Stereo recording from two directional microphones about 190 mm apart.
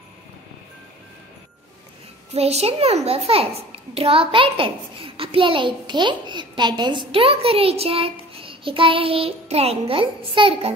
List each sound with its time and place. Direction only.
2.3 s a child's voice: 30° right (ahead or behind)